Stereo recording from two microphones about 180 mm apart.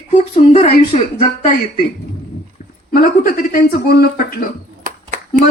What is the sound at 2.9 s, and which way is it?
Speech, 50° left (ahead or behind).